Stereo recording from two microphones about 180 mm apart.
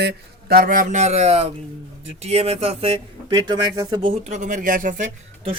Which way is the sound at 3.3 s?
20° right (ahead or behind).